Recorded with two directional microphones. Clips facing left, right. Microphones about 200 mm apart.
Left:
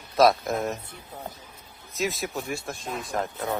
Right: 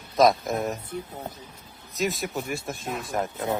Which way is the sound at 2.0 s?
Centre (ahead or behind).